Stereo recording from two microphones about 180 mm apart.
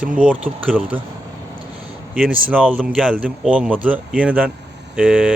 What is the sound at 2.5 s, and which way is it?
Speech, 5° right (ahead or behind).